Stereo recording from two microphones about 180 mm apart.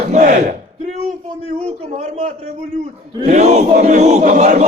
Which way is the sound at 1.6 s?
40° right (ahead or behind).